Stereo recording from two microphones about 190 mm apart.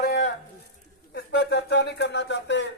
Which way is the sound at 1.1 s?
65° left (ahead or behind).